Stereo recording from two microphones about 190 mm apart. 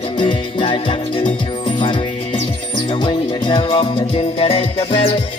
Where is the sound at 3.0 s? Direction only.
25° left (ahead or behind).